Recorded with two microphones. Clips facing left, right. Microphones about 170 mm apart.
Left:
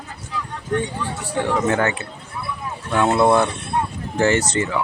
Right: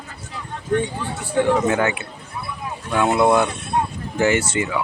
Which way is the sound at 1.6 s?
15° right (ahead or behind).